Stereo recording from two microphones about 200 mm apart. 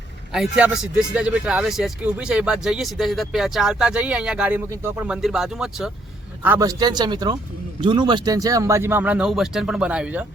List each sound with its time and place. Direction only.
0.3 s speech: 5° right (ahead or behind)
6.4 s a man's voice: 15° right (ahead or behind)